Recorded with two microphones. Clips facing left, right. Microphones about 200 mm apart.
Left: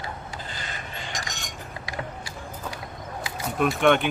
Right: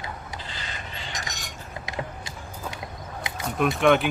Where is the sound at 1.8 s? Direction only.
20° right (ahead or behind).